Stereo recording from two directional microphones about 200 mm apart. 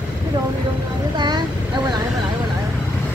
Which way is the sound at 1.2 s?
20° right (ahead or behind).